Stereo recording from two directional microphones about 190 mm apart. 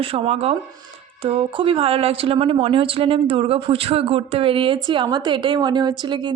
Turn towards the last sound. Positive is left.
turn(degrees=-25)  # may be behind; listen again after turning